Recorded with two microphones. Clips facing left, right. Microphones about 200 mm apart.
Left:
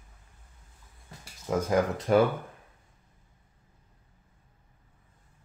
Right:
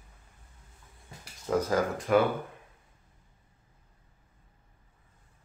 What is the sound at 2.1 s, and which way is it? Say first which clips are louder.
Speech: left 2 dB; 30° left (ahead or behind).